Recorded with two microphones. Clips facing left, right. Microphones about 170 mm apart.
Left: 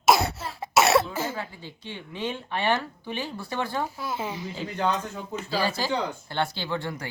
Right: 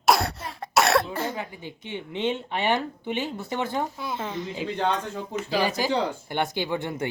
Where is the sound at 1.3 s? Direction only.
20° right (ahead or behind).